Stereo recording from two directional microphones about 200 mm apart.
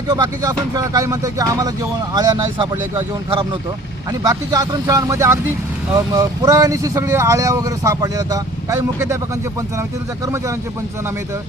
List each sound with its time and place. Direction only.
0.1 s speech: 20° right (ahead or behind)
4.2 s speech: 15° right (ahead or behind)